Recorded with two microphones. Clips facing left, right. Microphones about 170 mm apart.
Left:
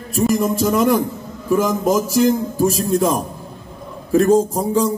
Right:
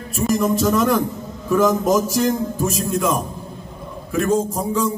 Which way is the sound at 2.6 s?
35° left (ahead or behind).